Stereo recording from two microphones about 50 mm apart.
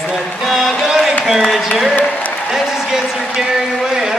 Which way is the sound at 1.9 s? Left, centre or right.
Left.